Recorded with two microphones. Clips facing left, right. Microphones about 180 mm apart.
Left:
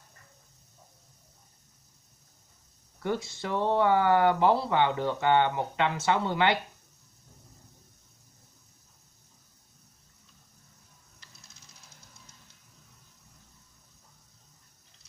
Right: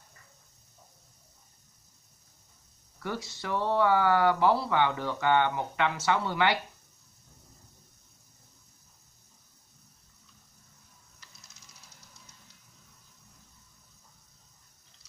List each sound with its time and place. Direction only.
3.0 s speech: 25° left (ahead or behind)